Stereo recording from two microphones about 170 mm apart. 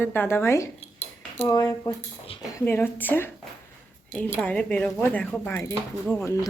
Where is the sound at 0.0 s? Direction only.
10° left (ahead or behind).